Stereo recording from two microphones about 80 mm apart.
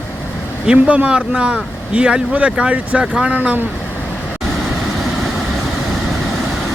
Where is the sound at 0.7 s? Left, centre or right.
Centre.